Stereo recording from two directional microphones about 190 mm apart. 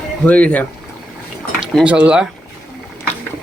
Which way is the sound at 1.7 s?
5° right (ahead or behind).